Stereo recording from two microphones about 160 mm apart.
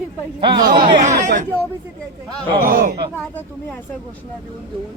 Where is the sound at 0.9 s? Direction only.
50° right (ahead or behind).